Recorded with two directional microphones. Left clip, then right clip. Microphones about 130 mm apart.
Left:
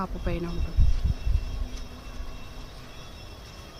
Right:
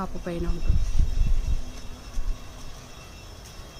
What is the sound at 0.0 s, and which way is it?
Speech, 15° right (ahead or behind).